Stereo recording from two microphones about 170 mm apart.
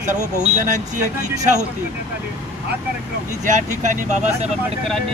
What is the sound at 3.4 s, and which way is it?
Speech, 45° right (ahead or behind).